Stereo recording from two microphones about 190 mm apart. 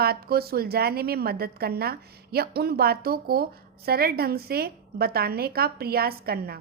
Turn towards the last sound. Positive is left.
turn(degrees=-55)  # may be behind; listen again after turning